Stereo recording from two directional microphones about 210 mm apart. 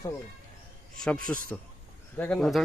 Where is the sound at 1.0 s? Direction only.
5° left (ahead or behind).